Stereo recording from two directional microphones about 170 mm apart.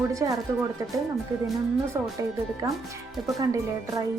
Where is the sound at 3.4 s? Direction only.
20° right (ahead or behind).